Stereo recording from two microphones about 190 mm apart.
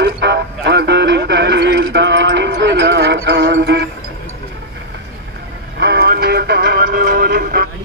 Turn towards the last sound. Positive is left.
turn(degrees=-50)  # may be behind; listen again after turning